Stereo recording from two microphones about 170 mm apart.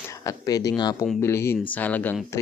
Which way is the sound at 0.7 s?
25° left (ahead or behind).